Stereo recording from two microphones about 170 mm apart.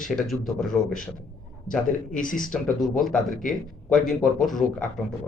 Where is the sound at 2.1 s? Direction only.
50° left (ahead or behind).